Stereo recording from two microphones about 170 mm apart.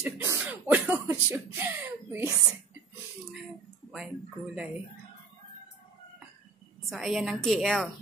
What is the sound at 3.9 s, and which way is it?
Speech, 5° right (ahead or behind).